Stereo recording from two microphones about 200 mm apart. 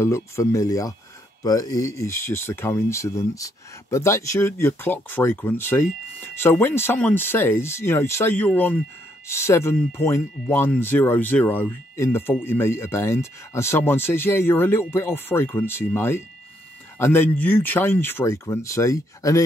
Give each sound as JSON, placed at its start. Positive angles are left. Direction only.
{"t": 0.0, "sound": "speech", "side_deg": 15}